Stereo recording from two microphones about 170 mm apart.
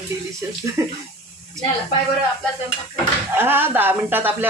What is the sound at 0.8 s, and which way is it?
Speech, 15° right (ahead or behind).